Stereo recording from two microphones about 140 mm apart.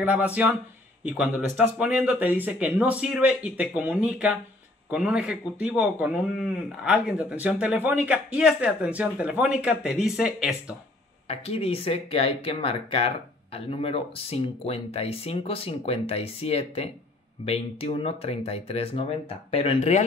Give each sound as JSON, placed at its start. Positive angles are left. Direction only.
{"t": 0.0, "sound": "speech", "side_deg": -10}
{"t": 11.2, "sound": "speech", "side_deg": 45}